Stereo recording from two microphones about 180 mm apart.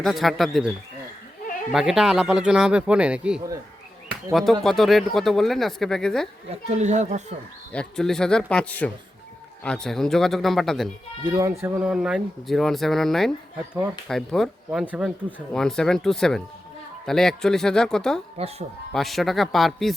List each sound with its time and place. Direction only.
0.0 s speech: centre (ahead or behind)
1.7 s speech: 5° right (ahead or behind)
6.5 s speech: 40° right (ahead or behind)
7.7 s speech: 5° left (ahead or behind)
11.2 s speech: 20° right (ahead or behind); by 18.2 s 5° left (ahead or behind)
18.4 s speech: 35° right (ahead or behind)
18.9 s speech: centre (ahead or behind)